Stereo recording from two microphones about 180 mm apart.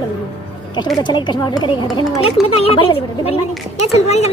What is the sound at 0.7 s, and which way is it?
A woman's voice, 25° left (ahead or behind).